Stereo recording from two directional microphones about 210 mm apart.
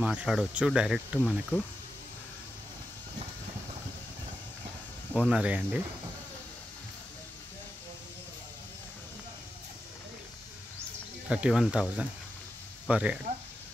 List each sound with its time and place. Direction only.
0.0 s speech: 5° right (ahead or behind)
5.1 s speech: 5° right (ahead or behind)
11.2 s speech: 5° right (ahead or behind)